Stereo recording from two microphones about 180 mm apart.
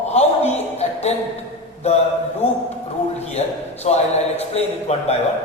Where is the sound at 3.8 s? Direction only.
35° left (ahead or behind).